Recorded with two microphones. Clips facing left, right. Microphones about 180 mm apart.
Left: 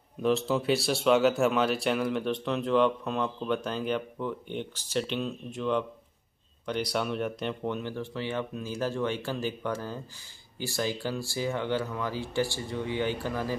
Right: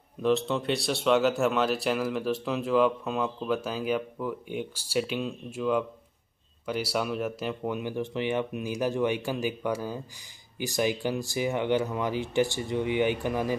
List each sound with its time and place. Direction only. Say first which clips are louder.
0.2 s speech: right 1 dB; centre (ahead or behind); by 13.6 s 15° right (ahead or behind)